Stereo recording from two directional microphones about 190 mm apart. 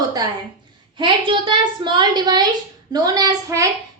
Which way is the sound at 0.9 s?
25° right (ahead or behind).